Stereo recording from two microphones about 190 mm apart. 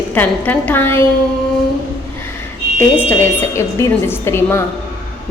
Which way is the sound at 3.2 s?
10° left (ahead or behind).